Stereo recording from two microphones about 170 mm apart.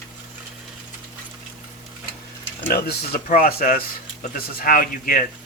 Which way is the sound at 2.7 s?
65° left (ahead or behind).